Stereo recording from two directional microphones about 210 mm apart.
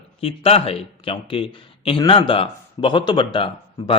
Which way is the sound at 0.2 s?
25° left (ahead or behind).